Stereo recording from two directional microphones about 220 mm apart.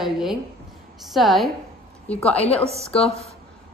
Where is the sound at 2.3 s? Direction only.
25° left (ahead or behind).